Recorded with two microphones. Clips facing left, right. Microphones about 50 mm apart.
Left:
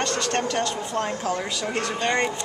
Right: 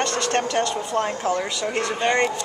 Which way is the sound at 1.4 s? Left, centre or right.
Centre.